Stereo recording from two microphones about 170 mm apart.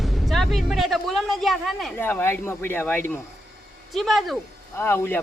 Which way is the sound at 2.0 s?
10° left (ahead or behind).